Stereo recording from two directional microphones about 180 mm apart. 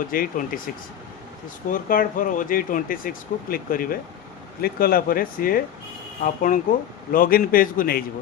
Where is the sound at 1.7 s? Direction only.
50° left (ahead or behind).